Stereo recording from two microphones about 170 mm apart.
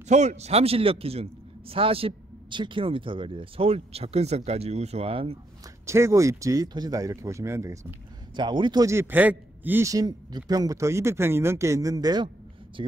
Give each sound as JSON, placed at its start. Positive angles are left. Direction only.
{"t": 0.1, "sound": "a man's voice", "side_deg": -45}
{"t": 5.9, "sound": "a man's voice", "side_deg": -15}
{"t": 8.4, "sound": "a man's voice", "side_deg": -25}